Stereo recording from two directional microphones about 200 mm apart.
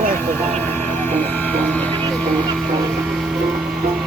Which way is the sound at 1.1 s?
10° left (ahead or behind).